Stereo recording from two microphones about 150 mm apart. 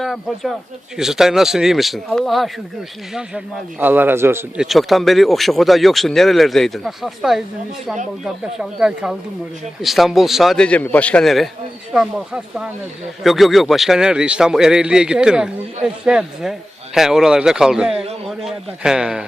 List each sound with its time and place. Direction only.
0.0 s a man's voice: centre (ahead or behind); by 4.4 s 15° right (ahead or behind)
4.5 s a man's voice: centre (ahead or behind)